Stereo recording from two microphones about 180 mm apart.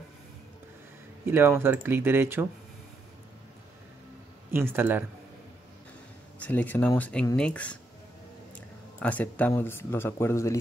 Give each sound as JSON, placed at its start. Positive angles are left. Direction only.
{"t": 1.2, "sound": "speech", "side_deg": -10}
{"t": 4.5, "sound": "speech", "side_deg": -10}
{"t": 6.4, "sound": "speech", "side_deg": 10}